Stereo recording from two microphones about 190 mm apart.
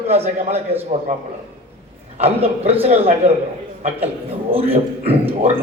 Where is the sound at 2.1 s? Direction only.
30° right (ahead or behind).